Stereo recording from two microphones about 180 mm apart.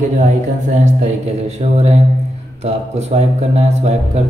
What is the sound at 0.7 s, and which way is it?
Speech, 40° right (ahead or behind).